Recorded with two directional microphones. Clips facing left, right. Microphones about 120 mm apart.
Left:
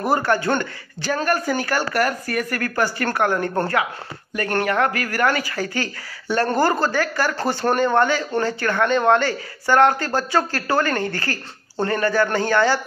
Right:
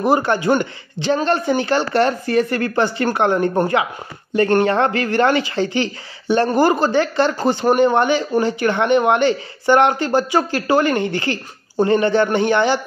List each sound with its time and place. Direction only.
0.0 s a man's voice: 20° right (ahead or behind)